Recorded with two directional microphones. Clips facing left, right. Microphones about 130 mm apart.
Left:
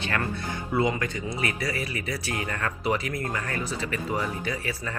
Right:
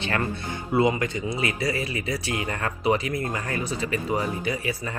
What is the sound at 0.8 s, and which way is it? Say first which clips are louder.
Speech: right 4 dB; 20° right (ahead or behind).